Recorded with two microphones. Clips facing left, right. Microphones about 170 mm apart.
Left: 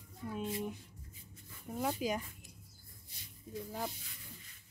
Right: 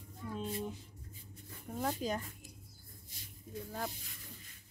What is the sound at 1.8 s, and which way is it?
Speech, 10° left (ahead or behind).